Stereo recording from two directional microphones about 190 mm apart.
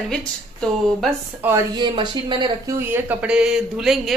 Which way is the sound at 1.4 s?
10° right (ahead or behind).